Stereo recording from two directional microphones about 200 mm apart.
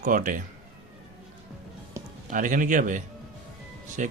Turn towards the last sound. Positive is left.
turn(degrees=-40)  # may be behind; listen again after turning